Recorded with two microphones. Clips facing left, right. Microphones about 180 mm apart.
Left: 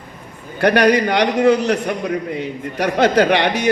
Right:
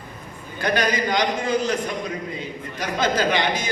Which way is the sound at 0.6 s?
65° left (ahead or behind).